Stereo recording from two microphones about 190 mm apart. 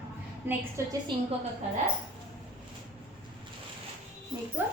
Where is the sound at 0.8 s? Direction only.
15° right (ahead or behind).